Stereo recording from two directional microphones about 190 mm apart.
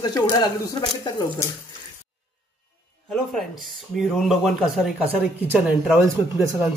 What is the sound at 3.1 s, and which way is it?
Speech, centre (ahead or behind).